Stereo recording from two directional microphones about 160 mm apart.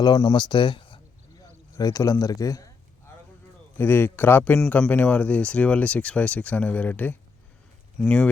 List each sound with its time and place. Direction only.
0.0 s speech: 25° left (ahead or behind)
3.8 s speech: 15° left (ahead or behind)